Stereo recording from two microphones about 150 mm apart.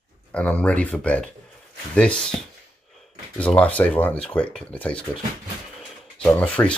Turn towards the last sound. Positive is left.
turn(degrees=10)  # may be behind; listen again after turning